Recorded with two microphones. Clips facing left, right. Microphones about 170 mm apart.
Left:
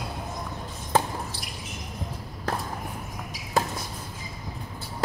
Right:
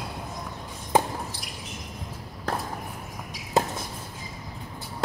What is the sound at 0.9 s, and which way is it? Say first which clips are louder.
Drip: right 1 dB; 15° right (ahead or behind).